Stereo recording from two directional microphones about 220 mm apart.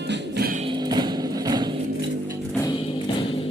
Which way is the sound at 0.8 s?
20° right (ahead or behind).